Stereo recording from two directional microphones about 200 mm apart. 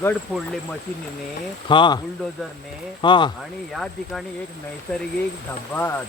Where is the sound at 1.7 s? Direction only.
25° left (ahead or behind).